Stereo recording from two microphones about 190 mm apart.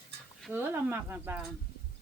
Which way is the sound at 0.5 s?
10° right (ahead or behind).